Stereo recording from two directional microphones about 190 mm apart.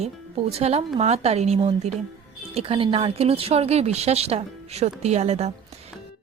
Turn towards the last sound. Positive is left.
turn(degrees=-35)  # may be behind; listen again after turning